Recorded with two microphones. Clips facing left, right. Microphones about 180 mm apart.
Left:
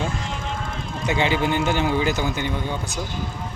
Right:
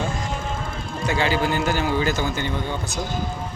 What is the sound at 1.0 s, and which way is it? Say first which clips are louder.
A man's voice: even; 20° left (ahead or behind).